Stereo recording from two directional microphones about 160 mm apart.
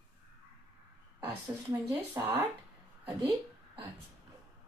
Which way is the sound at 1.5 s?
15° right (ahead or behind).